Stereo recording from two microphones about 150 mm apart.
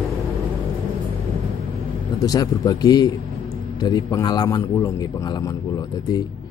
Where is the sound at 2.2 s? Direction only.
25° left (ahead or behind).